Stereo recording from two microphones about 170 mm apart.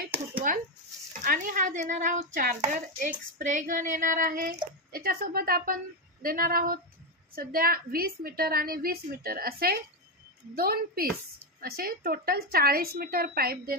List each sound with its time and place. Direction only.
1.2 s speech: 55° right (ahead or behind)